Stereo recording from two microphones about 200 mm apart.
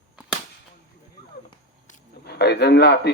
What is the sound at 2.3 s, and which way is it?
Speech, 55° left (ahead or behind).